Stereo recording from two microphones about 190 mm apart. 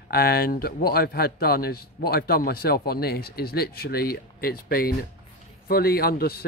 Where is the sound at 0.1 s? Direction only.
50° left (ahead or behind).